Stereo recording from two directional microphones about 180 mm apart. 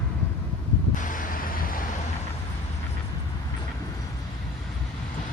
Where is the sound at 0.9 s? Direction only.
50° left (ahead or behind).